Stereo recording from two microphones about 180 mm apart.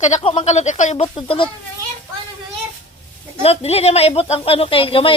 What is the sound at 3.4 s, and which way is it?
Speech, 35° left (ahead or behind).